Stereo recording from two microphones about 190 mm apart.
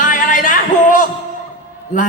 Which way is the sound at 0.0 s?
45° left (ahead or behind).